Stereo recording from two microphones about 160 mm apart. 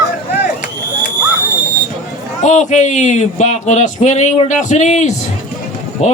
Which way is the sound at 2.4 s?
50° left (ahead or behind).